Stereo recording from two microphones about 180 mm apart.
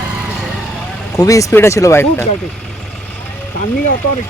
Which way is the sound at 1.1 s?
20° left (ahead or behind).